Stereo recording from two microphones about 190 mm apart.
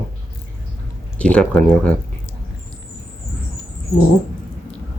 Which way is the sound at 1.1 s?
5° left (ahead or behind).